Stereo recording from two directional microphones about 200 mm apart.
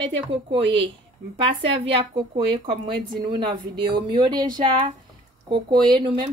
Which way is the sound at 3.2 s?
25° right (ahead or behind).